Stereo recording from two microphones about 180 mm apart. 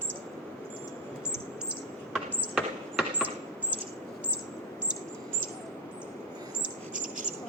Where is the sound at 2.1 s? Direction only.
5° right (ahead or behind).